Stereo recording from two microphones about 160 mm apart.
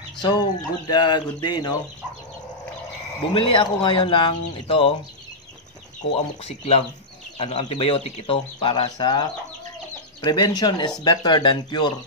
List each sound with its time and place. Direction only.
0.2 s speech: 25° left (ahead or behind)
3.3 s speech: 30° left (ahead or behind)
6.4 s speech: 40° left (ahead or behind)